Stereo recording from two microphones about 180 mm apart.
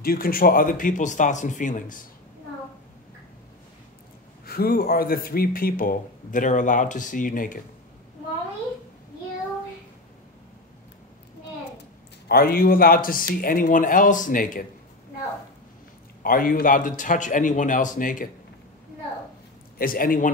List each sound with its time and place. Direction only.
0.0 s speech: 55° left (ahead or behind)
4.5 s speech: 55° left (ahead or behind)
12.3 s a man's voice: 60° left (ahead or behind)
16.2 s speech: 50° left (ahead or behind)
19.8 s speech: 50° left (ahead or behind)